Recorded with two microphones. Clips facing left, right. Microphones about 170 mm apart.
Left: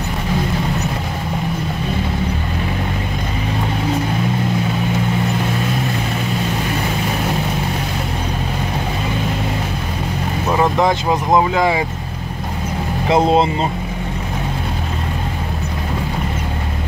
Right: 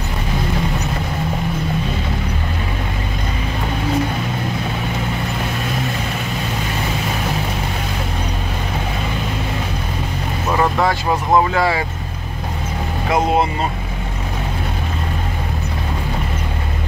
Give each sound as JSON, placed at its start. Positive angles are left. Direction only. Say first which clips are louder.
{"t": 10.5, "sound": "speech", "louder": "left 2 dB", "side_deg": 15}
{"t": 13.1, "sound": "speech", "louder": "left 3 dB", "side_deg": 25}